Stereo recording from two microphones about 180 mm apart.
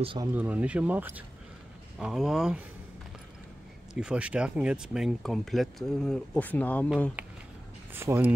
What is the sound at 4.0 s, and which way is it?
Speech, 5° right (ahead or behind).